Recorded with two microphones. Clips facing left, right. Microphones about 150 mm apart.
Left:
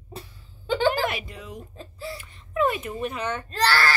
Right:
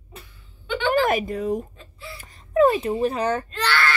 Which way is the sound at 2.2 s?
40° right (ahead or behind).